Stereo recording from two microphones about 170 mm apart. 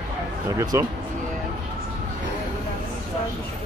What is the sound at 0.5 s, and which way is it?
Speech, 20° right (ahead or behind).